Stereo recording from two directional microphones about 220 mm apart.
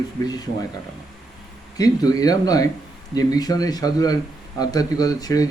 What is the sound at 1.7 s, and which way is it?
A man's voice, 15° left (ahead or behind).